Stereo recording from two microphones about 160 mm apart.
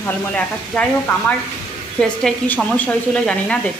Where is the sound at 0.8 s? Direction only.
5° left (ahead or behind).